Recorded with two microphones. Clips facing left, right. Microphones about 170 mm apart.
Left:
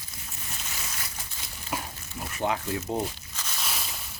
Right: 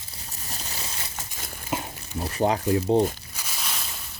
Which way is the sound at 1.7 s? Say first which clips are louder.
Right 4 dB; 35° right (ahead or behind).